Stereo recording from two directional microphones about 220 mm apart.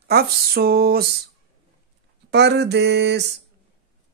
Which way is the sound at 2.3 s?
50° right (ahead or behind).